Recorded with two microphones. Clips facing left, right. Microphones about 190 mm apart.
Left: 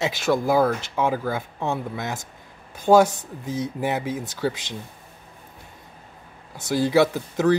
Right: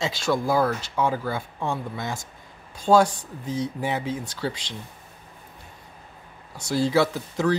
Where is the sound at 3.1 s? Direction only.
45° left (ahead or behind).